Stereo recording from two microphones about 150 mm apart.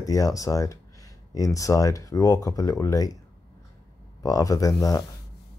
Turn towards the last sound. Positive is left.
turn(degrees=25)  # may be behind; listen again after turning